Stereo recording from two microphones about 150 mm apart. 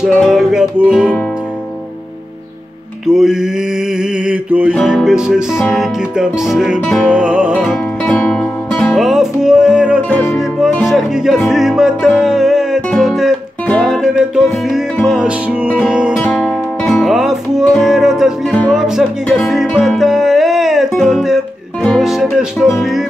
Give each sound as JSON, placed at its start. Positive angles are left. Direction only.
{"t": 0.0, "sound": "music", "side_deg": 0}
{"t": 3.1, "sound": "music", "side_deg": -5}
{"t": 4.0, "sound": "mantra", "side_deg": -5}
{"t": 4.7, "sound": "music", "side_deg": 0}
{"t": 10.0, "sound": "music", "side_deg": 10}
{"t": 10.6, "sound": "music", "side_deg": 0}